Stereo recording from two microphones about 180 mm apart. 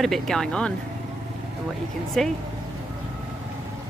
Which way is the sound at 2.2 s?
5° left (ahead or behind).